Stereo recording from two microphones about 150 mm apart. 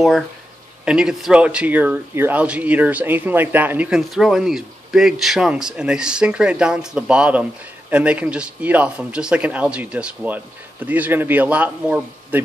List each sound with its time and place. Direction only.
0.8 s speech: 5° right (ahead or behind)